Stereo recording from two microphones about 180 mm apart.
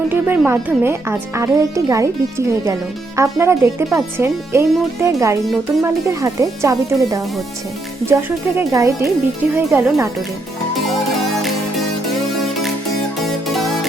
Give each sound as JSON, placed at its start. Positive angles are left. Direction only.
{"t": 0.1, "sound": "speech", "side_deg": -10}
{"t": 3.2, "sound": "speech", "side_deg": -15}